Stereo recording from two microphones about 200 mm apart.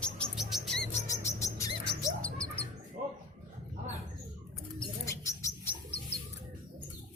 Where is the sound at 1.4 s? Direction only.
15° left (ahead or behind).